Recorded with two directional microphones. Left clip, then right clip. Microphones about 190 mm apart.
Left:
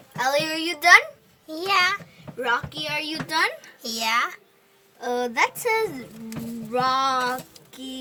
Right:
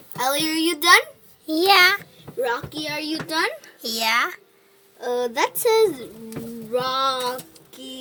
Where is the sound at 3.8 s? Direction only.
25° right (ahead or behind).